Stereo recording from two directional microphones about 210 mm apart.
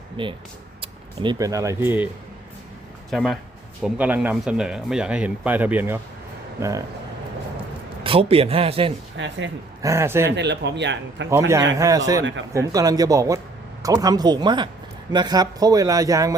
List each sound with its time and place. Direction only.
0.2 s a man's voice: 25° right (ahead or behind)
3.1 s speech: centre (ahead or behind); by 6.8 s 15° right (ahead or behind)
8.0 s a man's voice: 25° right (ahead or behind)
9.1 s a man's voice: 60° right (ahead or behind)
9.8 s speech: 15° right (ahead or behind)
10.3 s a man's voice: 55° right (ahead or behind)
11.3 s a man's voice: 15° right (ahead or behind)